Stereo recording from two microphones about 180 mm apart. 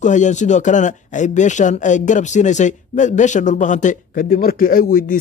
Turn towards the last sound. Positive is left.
turn(degrees=50)  # may be behind; listen again after turning